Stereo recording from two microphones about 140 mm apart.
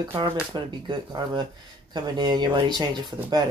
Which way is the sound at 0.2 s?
35° right (ahead or behind).